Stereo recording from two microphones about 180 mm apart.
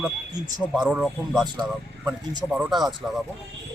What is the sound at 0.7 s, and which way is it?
Speech, 5° right (ahead or behind).